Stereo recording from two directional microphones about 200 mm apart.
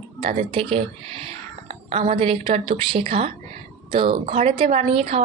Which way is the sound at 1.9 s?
30° right (ahead or behind).